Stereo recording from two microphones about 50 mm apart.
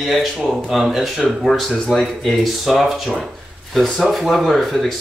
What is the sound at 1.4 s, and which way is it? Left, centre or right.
Speech, centre.